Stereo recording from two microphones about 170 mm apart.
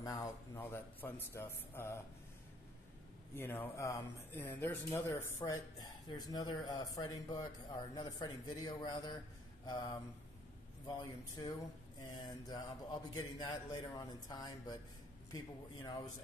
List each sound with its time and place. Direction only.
0.0 s a man's voice: 20° left (ahead or behind)
3.3 s a man's voice: 10° left (ahead or behind)
5.4 s speech: 25° left (ahead or behind)
11.0 s speech: 25° left (ahead or behind)